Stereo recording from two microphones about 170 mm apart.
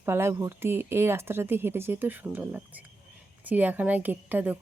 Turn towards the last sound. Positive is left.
turn(degrees=-10)  # may be behind; listen again after turning